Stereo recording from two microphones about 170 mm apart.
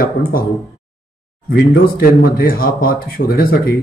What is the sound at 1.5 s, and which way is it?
Speech, 60° left (ahead or behind).